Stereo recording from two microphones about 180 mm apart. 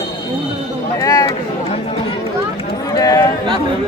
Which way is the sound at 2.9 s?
20° left (ahead or behind).